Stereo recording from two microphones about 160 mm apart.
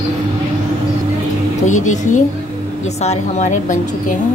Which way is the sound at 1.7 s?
50° left (ahead or behind).